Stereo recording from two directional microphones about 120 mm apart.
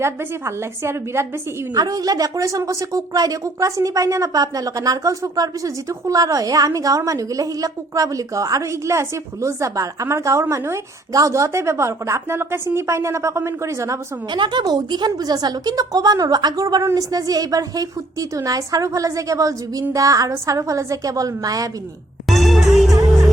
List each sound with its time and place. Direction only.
0.0 s speech: 20° right (ahead or behind)
1.7 s speech: 30° right (ahead or behind)
14.3 s a woman's voice: 40° right (ahead or behind)
22.3 s music: centre (ahead or behind)